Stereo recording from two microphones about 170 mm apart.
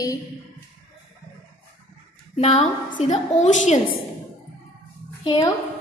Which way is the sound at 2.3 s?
40° left (ahead or behind).